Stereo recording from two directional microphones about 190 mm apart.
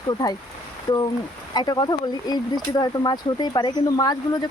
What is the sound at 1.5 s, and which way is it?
Speech, 20° left (ahead or behind).